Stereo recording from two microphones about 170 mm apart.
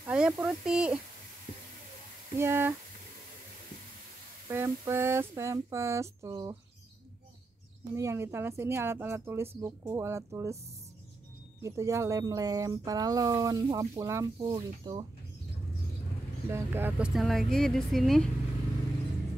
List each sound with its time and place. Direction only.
0.0 s speech: 10° right (ahead or behind)
2.3 s speech: 15° right (ahead or behind)
4.5 s speech: 15° right (ahead or behind)
7.9 s speech: 15° right (ahead or behind)
11.6 s speech: 15° right (ahead or behind)
14.5 s speech: 30° right (ahead or behind)
16.4 s speech: 15° right (ahead or behind)
17.1 s speech: centre (ahead or behind)